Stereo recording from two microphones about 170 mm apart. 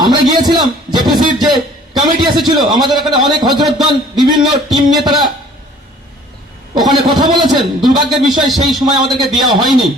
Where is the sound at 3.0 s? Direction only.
25° right (ahead or behind).